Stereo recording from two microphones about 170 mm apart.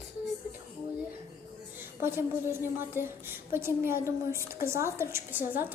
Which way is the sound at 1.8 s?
15° right (ahead or behind).